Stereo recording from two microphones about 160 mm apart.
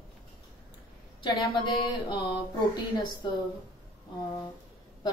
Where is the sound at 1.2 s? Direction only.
30° left (ahead or behind).